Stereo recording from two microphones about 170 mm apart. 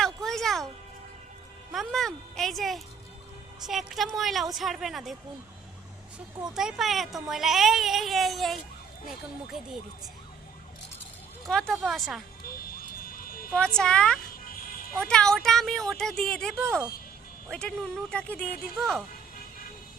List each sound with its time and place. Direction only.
0.0 s music: centre (ahead or behind)
1.7 s speech: centre (ahead or behind)
6.6 s speech: centre (ahead or behind)
11.4 s speech: 5° left (ahead or behind)
12.5 s sheep: 60° left (ahead or behind)
13.7 s speech: 5° left (ahead or behind)
16.6 s speech: 15° right (ahead or behind)
17.5 s speech: 5° left (ahead or behind)